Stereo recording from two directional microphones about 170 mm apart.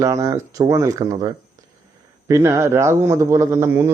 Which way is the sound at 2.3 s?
15° right (ahead or behind).